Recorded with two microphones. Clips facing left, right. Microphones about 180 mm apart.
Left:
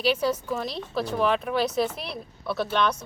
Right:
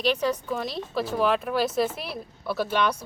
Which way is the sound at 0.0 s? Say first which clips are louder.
Even; 5° left (ahead or behind).